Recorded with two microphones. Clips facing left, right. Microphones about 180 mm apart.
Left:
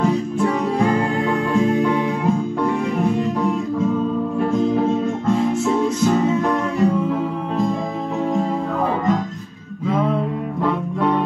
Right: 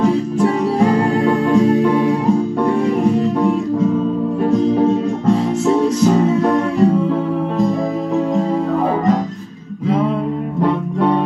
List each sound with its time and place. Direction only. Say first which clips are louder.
1.5 s music: right 5 dB; 35° right (ahead or behind)
5.9 s music: right 4 dB; 35° right (ahead or behind)